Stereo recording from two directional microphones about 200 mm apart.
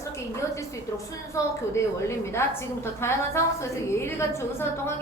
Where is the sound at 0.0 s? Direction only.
15° left (ahead or behind).